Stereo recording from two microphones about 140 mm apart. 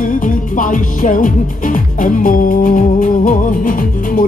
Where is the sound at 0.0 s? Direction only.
70° left (ahead or behind).